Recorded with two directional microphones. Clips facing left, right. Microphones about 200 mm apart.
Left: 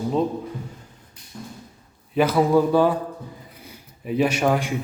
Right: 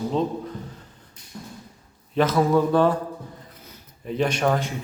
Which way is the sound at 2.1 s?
10° left (ahead or behind).